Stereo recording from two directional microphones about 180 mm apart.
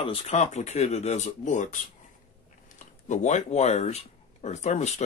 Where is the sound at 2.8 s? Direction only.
40° left (ahead or behind).